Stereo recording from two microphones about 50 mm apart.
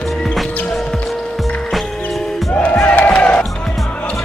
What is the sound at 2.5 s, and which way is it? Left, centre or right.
Crowd, left.